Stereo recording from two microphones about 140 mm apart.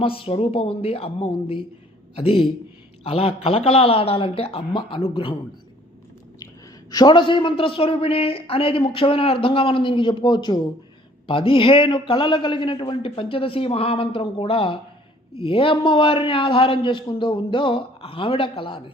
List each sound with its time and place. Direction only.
0.0 s a man's voice: 40° left (ahead or behind)
6.9 s a man's voice: 30° left (ahead or behind)